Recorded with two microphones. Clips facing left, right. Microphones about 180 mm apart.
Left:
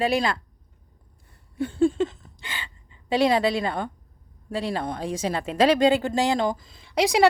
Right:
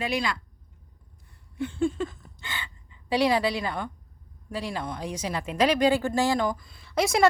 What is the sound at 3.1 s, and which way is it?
A woman's voice, 25° left (ahead or behind).